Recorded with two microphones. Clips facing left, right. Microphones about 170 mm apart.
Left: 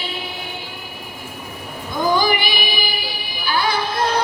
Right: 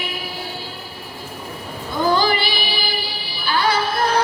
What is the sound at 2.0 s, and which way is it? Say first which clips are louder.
Female singing: even; 15° left (ahead or behind).